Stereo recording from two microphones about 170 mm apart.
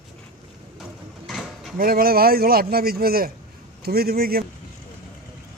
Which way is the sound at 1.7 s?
60° right (ahead or behind).